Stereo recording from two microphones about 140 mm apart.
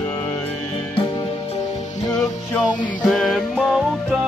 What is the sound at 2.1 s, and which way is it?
Music, 5° left (ahead or behind).